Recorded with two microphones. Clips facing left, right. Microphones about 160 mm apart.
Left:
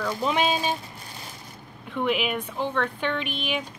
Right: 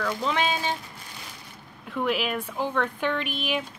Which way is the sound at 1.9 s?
Centre (ahead or behind).